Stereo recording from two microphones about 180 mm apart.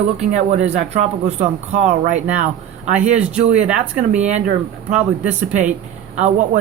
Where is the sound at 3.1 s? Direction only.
5° right (ahead or behind).